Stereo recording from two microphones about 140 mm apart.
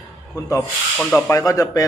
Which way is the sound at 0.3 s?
25° left (ahead or behind).